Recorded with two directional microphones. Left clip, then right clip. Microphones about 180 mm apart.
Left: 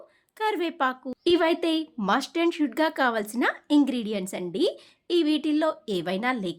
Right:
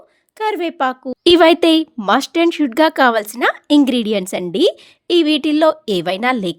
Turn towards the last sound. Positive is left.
turn(degrees=-50)  # may be behind; listen again after turning